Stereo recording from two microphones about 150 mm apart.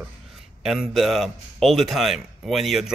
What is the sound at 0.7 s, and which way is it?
Speech, centre (ahead or behind).